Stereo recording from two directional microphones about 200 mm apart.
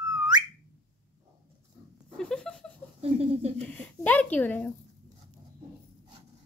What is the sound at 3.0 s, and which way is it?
Speech, 30° right (ahead or behind).